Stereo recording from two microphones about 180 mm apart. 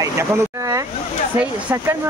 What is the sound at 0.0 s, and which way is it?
Speech, 15° right (ahead or behind).